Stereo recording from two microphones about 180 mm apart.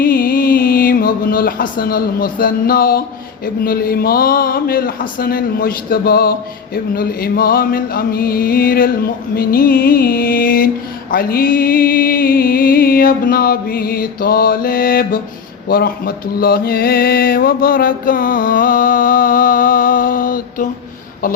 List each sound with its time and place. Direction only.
0.0 s mantra: 55° left (ahead or behind)
3.4 s a man's voice: 55° left (ahead or behind)
9.3 s mantra: 55° left (ahead or behind)